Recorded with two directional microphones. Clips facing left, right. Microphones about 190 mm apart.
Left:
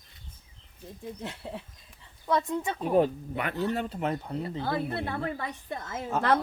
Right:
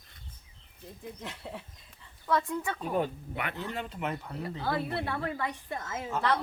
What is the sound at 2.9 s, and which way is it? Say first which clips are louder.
Speech: left 8 dB; 35° left (ahead or behind).